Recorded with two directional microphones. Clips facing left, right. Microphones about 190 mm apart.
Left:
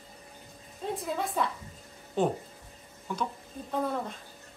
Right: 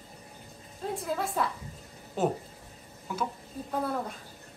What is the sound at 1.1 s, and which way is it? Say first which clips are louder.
A woman's voice: even; centre (ahead or behind).